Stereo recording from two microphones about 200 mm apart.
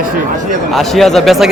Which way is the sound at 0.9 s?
Centre (ahead or behind).